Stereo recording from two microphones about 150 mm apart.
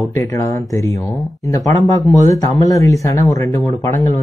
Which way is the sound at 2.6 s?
20° left (ahead or behind).